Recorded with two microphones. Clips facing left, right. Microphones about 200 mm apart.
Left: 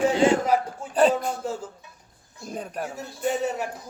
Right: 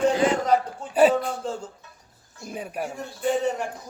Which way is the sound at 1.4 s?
10° left (ahead or behind).